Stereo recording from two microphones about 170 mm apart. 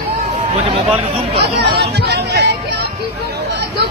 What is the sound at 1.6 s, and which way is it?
Music, 80° right.